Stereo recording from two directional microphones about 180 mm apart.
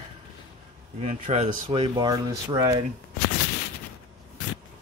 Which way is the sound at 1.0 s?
35° right (ahead or behind).